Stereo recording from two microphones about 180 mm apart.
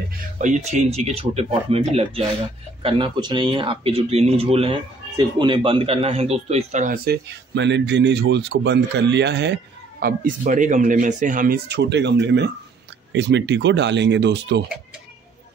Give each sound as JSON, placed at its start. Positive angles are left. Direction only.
{"t": 0.4, "sound": "speech", "side_deg": -40}
{"t": 7.1, "sound": "speech", "side_deg": -80}